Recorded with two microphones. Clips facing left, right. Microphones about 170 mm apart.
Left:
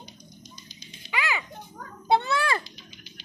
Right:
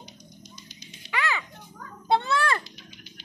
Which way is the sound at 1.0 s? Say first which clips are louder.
Even; 70° right (ahead or behind).